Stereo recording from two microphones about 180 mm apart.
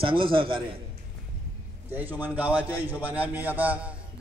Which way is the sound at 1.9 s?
10° right (ahead or behind).